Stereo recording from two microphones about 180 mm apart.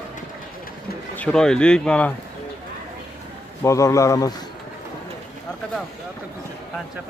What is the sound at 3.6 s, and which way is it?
Speech, 15° left (ahead or behind).